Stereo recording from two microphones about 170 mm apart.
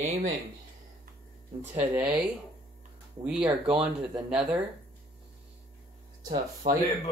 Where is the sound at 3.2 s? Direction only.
5° right (ahead or behind).